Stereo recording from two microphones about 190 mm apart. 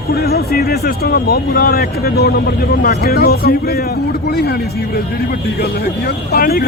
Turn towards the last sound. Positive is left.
turn(degrees=55)  # may be behind; listen again after turning